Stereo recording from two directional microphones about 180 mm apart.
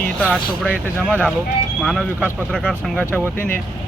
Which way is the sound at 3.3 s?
50° left (ahead or behind).